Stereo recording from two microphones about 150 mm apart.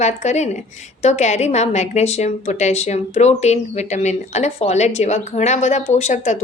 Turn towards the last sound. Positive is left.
turn(degrees=50)  # may be behind; listen again after turning